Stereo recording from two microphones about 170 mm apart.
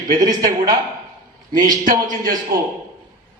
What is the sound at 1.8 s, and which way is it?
Speech, 50° right (ahead or behind).